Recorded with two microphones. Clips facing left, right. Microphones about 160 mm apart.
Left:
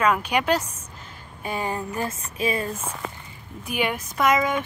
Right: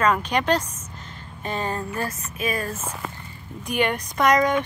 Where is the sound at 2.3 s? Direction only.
30° left (ahead or behind).